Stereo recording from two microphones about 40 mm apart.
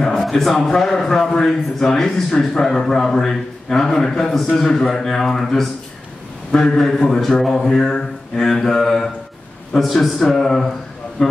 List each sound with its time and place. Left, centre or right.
0.2 s a man's voice: centre
11.2 s speech: centre